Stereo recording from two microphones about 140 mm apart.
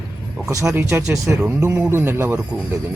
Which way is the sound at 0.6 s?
15° right (ahead or behind).